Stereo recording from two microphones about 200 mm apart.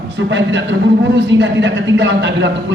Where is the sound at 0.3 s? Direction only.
65° right (ahead or behind).